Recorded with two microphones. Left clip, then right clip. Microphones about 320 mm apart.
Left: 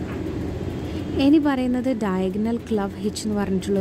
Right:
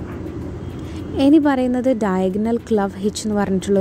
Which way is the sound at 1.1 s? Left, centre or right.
Centre.